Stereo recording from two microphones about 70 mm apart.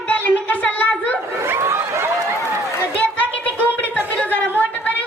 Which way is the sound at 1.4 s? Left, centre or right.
Right.